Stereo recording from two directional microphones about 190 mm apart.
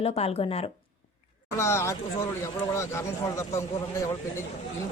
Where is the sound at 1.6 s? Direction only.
15° left (ahead or behind).